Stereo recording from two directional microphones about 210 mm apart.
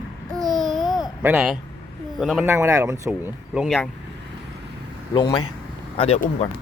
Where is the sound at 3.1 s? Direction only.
5° right (ahead or behind).